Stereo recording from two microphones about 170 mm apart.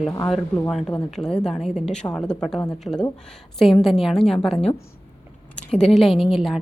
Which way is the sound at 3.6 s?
Centre (ahead or behind).